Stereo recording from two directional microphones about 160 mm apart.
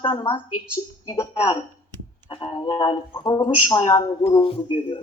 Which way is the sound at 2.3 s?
35° left (ahead or behind).